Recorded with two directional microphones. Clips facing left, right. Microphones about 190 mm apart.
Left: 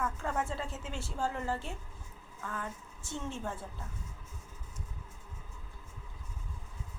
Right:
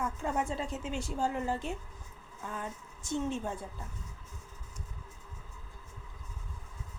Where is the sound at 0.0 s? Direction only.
15° right (ahead or behind).